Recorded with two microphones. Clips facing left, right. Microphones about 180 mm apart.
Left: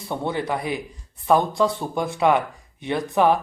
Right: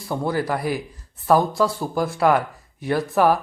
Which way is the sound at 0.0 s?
Centre (ahead or behind).